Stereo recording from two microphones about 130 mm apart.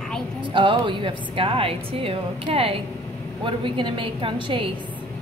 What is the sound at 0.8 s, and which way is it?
A woman's voice, 40° right (ahead or behind).